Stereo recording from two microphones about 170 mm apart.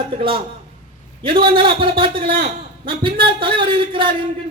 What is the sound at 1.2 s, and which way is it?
Speech, 30° right (ahead or behind).